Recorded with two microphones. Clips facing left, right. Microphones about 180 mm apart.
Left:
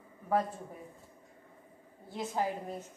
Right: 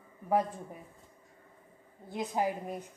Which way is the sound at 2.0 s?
15° right (ahead or behind).